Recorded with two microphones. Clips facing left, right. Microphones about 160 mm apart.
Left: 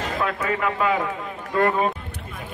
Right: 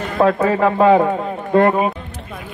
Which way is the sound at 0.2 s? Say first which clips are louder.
Right 12 dB; 35° right (ahead or behind).